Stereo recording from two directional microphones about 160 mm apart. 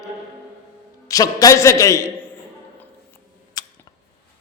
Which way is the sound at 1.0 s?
20° left (ahead or behind).